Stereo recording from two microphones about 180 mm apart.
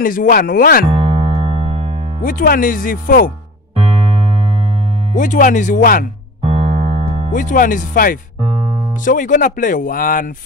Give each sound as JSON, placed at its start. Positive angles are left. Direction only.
{"t": 0.0, "sound": "speech", "side_deg": 50}
{"t": 0.8, "sound": "music", "side_deg": -30}
{"t": 2.2, "sound": "speech", "side_deg": 50}
{"t": 3.7, "sound": "electric piano", "side_deg": -30}
{"t": 5.1, "sound": "speech", "side_deg": 45}
{"t": 6.4, "sound": "electric piano", "side_deg": -30}
{"t": 7.3, "sound": "speech", "side_deg": 50}
{"t": 8.4, "sound": "music", "side_deg": -30}
{"t": 9.0, "sound": "speech", "side_deg": 45}